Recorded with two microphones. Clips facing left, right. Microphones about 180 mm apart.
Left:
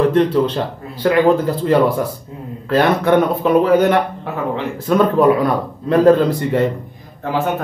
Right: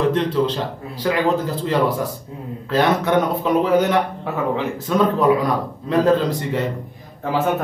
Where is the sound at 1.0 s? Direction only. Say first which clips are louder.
Left 6 dB; 60° left (ahead or behind).